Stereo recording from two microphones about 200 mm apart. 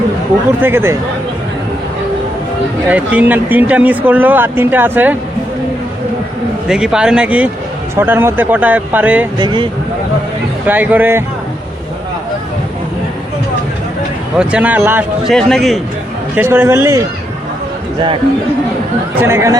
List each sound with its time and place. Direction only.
0.6 s speech: 10° right (ahead or behind)
2.9 s speech: 5° right (ahead or behind)
6.7 s speech: 5° right (ahead or behind)
9.4 s speech: 25° right (ahead or behind)
10.7 s speech: 10° right (ahead or behind)
14.3 s speech: 5° right (ahead or behind)
16.3 s speech: 10° right (ahead or behind)
19.2 s speech: 15° right (ahead or behind)